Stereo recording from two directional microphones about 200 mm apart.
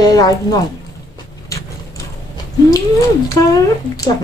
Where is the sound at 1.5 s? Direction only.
15° left (ahead or behind).